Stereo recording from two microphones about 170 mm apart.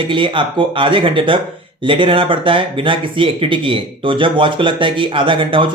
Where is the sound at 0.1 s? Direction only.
30° right (ahead or behind).